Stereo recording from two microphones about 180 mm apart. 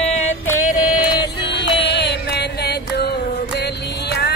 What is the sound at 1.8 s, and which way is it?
Chant, 70° left (ahead or behind).